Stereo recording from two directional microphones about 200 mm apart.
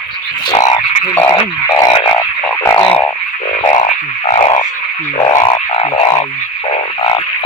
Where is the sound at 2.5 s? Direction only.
10° left (ahead or behind).